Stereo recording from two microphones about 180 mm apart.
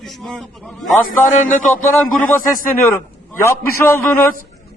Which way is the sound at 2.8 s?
10° left (ahead or behind).